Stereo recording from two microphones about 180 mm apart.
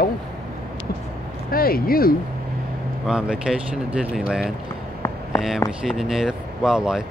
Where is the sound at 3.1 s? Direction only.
5° right (ahead or behind).